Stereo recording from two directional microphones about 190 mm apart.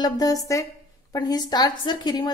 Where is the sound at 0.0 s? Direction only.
20° left (ahead or behind).